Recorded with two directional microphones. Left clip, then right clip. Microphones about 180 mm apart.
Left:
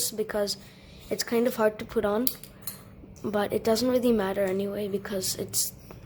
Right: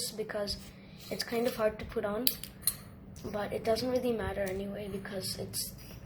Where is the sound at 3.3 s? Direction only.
45° left (ahead or behind).